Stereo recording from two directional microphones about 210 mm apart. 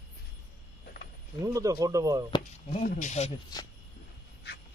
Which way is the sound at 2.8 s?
35° left (ahead or behind).